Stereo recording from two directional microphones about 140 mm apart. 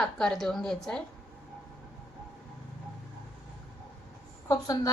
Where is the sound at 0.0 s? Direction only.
Centre (ahead or behind).